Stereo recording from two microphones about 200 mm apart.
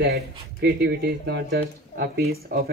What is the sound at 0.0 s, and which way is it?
Speech, 55° right (ahead or behind).